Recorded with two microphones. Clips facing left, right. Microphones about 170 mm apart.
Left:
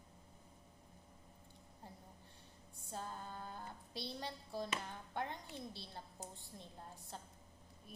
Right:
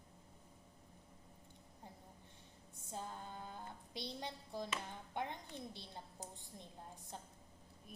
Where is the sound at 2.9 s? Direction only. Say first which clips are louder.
Left 1 dB; 20° right (ahead or behind).